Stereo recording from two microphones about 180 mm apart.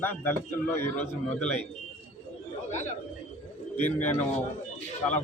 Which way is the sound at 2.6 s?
40° left (ahead or behind).